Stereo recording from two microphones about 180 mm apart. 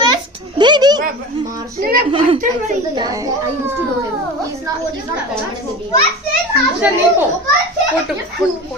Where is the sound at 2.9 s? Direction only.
20° right (ahead or behind).